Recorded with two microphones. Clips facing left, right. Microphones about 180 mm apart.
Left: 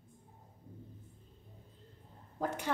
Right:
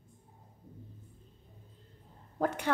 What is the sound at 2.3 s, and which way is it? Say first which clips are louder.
Speech: right 5 dB; 65° right (ahead or behind).